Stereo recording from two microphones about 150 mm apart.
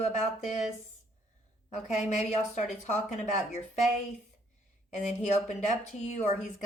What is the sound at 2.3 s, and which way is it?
Speech, 50° left (ahead or behind).